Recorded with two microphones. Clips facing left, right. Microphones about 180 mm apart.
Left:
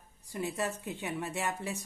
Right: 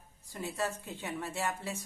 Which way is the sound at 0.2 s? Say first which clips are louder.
Left 2 dB; 15° left (ahead or behind).